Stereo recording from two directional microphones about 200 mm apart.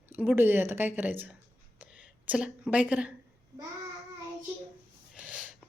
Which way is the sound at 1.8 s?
5° right (ahead or behind).